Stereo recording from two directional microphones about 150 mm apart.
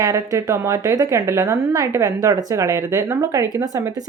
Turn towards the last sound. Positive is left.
turn(degrees=-20)  # may be behind; listen again after turning